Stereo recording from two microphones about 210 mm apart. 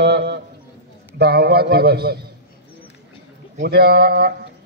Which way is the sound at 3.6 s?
50° right (ahead or behind).